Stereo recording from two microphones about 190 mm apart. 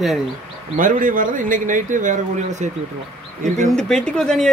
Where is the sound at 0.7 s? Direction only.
45° right (ahead or behind).